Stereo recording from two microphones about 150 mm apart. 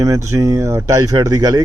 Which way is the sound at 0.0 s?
20° right (ahead or behind).